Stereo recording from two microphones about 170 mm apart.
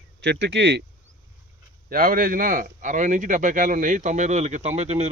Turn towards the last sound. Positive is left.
turn(degrees=-40)  # may be behind; listen again after turning